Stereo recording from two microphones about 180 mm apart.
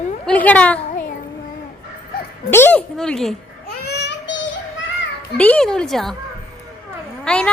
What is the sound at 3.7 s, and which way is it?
Child singing, 65° left (ahead or behind).